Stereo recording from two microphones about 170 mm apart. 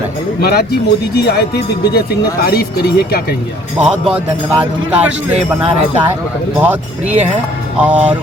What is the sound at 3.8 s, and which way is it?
Speech, 5° right (ahead or behind).